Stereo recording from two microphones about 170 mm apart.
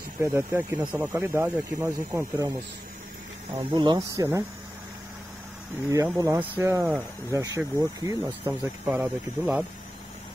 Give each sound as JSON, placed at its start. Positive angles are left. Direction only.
{"t": 0.2, "sound": "speech", "side_deg": -15}
{"t": 3.5, "sound": "speech", "side_deg": -25}
{"t": 5.9, "sound": "speech", "side_deg": -20}
{"t": 8.8, "sound": "speech", "side_deg": -5}